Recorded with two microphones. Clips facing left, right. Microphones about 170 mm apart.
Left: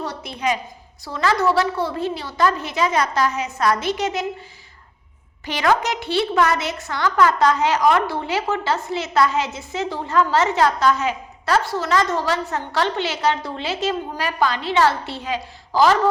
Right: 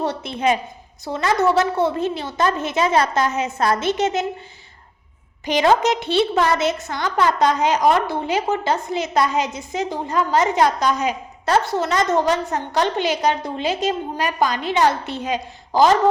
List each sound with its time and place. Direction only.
0.0 s a woman's voice: 25° right (ahead or behind)
5.5 s a woman's voice: 20° right (ahead or behind)